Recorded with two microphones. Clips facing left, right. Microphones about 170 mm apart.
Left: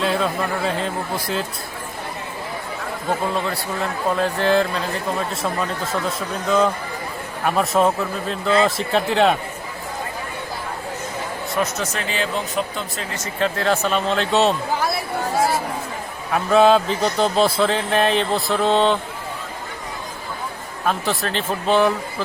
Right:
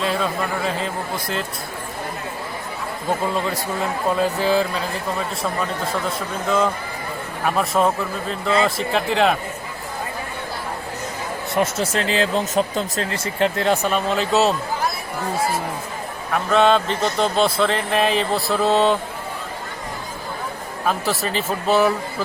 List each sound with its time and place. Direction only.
0.0 s speech: centre (ahead or behind)
4.1 s speech: 5° right (ahead or behind)
5.9 s speech: centre (ahead or behind)
11.5 s speech: 25° right (ahead or behind)
13.6 s speech: 15° right (ahead or behind)
16.3 s speech: 5° left (ahead or behind)
20.8 s speech: 5° right (ahead or behind)